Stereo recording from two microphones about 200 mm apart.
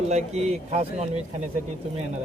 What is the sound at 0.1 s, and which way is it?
Speech, 35° right (ahead or behind).